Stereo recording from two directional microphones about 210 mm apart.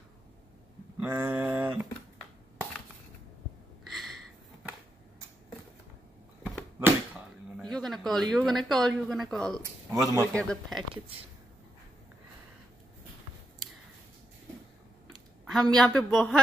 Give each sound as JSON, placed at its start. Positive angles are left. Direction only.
{"t": 1.0, "sound": "a sound", "side_deg": -10}
{"t": 6.4, "sound": "a sound", "side_deg": 0}
{"t": 7.5, "sound": "speech", "side_deg": 0}
{"t": 9.6, "sound": "speech", "side_deg": -15}
{"t": 10.2, "sound": "a man's voice", "side_deg": 5}
{"t": 15.4, "sound": "a man's voice", "side_deg": 0}